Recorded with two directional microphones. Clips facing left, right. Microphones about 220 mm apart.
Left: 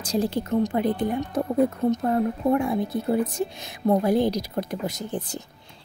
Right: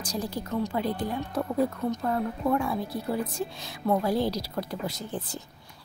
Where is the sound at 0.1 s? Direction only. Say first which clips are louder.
Left 8 dB; 25° left (ahead or behind).